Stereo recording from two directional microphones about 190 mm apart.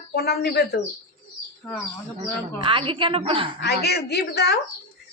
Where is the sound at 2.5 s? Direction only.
25° right (ahead or behind).